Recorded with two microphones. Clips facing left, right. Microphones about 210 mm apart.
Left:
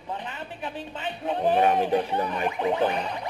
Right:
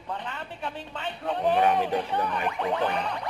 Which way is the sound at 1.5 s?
40° left (ahead or behind).